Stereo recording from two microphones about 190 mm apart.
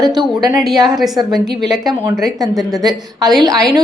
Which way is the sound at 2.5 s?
Centre (ahead or behind).